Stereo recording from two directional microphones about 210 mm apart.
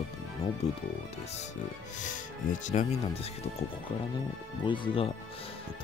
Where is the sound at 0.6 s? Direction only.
30° left (ahead or behind).